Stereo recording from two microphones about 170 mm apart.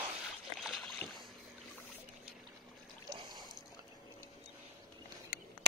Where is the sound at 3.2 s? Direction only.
25° right (ahead or behind).